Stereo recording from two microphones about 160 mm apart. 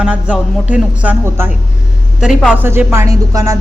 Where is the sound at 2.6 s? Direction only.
15° right (ahead or behind).